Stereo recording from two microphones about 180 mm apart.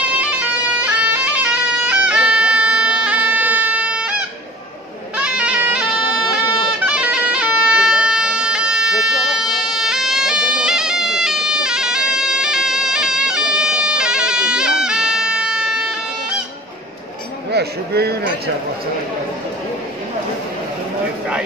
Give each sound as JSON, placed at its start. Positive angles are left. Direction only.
{"t": 0.0, "sound": "bagpipes", "side_deg": -5}
{"t": 5.1, "sound": "bagpipes", "side_deg": -5}
{"t": 17.5, "sound": "a sound", "side_deg": -65}